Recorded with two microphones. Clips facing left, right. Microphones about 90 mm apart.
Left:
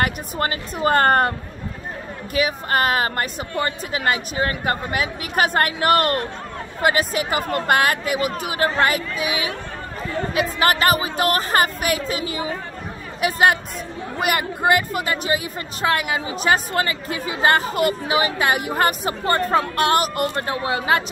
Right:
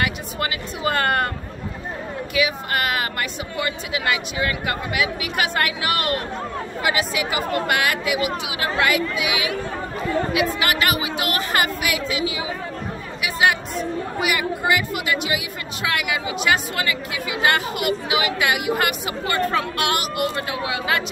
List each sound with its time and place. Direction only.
0.0 s speech: 40° left (ahead or behind)
2.3 s speech: 40° left (ahead or behind)
10.6 s speech: 40° left (ahead or behind)